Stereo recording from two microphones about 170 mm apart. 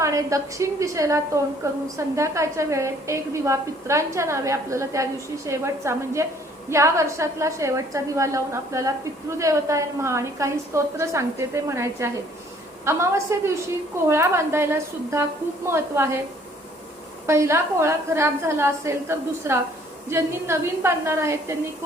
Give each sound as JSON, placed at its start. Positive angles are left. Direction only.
{"t": 0.0, "sound": "a woman's voice", "side_deg": -20}
{"t": 17.2, "sound": "a woman's voice", "side_deg": -15}